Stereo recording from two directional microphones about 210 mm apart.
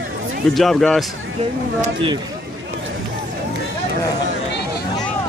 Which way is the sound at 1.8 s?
25° right (ahead or behind).